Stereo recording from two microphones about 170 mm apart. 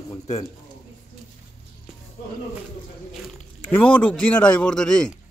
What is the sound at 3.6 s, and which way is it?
A man's voice, 10° left (ahead or behind).